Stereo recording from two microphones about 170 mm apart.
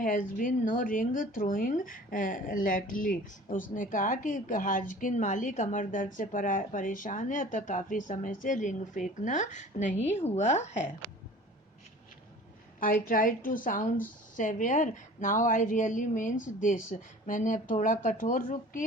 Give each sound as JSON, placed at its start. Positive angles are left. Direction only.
{"t": 0.0, "sound": "speech", "side_deg": 50}
{"t": 12.8, "sound": "speech", "side_deg": 55}